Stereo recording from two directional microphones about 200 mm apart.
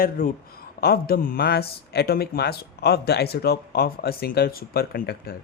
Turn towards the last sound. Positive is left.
turn(degrees=50)  # may be behind; listen again after turning